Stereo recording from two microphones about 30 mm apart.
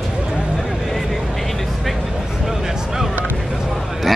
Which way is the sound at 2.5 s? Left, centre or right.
Centre.